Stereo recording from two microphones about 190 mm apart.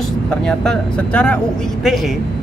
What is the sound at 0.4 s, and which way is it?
Speech, 5° left (ahead or behind).